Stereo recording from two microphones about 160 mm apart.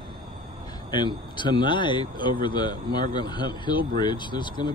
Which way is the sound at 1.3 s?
30° left (ahead or behind).